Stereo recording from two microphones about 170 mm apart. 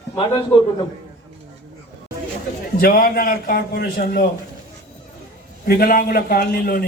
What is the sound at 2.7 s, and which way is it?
A man's voice, 60° left (ahead or behind).